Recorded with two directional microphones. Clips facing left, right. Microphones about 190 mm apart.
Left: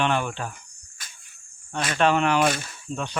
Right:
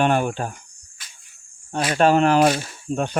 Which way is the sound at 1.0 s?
50° left (ahead or behind).